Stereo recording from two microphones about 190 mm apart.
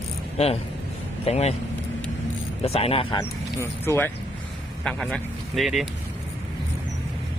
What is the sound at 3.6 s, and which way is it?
Speech, 10° left (ahead or behind).